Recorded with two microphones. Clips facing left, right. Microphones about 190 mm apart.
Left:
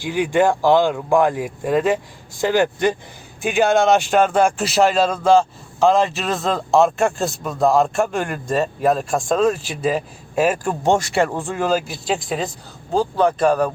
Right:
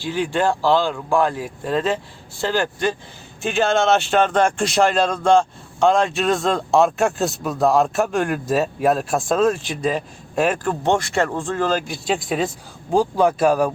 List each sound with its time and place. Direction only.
0.0 s speech: 15° left (ahead or behind); by 12.5 s centre (ahead or behind)
12.9 s speech: 10° right (ahead or behind)